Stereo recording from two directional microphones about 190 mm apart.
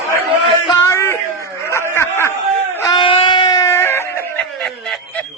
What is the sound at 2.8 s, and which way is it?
Screaming, 25° left (ahead or behind).